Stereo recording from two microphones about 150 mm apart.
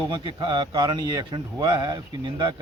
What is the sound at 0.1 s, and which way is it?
Speech, 30° right (ahead or behind).